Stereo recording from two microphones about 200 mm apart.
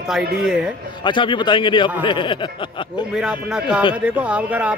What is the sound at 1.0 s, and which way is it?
Speech, 25° left (ahead or behind).